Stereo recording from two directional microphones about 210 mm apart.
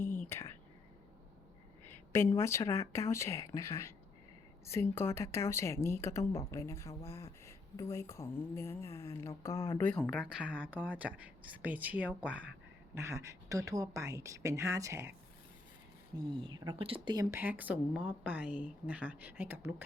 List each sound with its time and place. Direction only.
0.2 s whispering: 10° left (ahead or behind)
1.9 s a woman's voice: 10° left (ahead or behind); by 15.1 s 15° right (ahead or behind)
16.4 s speech: 20° right (ahead or behind)
17.4 s speech: 5° right (ahead or behind)